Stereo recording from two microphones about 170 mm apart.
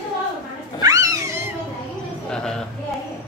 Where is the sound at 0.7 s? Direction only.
20° right (ahead or behind).